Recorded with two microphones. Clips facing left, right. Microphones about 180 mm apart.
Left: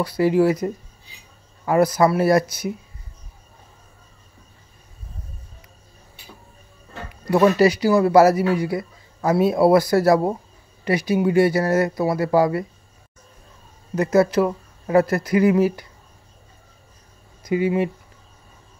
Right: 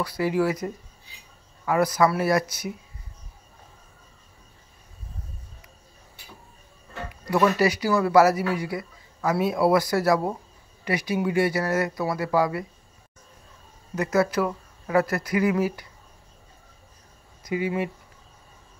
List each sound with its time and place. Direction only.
0.0 s a man's voice: 30° left (ahead or behind)
7.2 s a man's voice: 25° left (ahead or behind)
13.9 s a man's voice: 30° left (ahead or behind)
17.5 s a man's voice: 25° left (ahead or behind)